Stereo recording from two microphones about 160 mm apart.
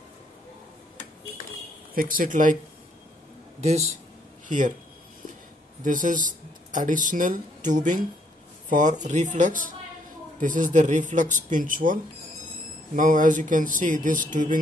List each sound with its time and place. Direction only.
2.0 s speech: 60° right (ahead or behind)
3.6 s speech: 45° right (ahead or behind)
5.9 s speech: 55° right (ahead or behind)